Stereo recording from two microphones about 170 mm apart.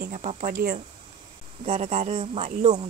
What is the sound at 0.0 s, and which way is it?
Speech, 55° right (ahead or behind).